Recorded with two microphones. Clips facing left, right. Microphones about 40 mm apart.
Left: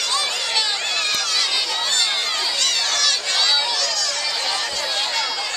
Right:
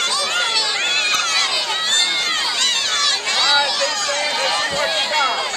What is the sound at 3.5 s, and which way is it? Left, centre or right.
Run, right.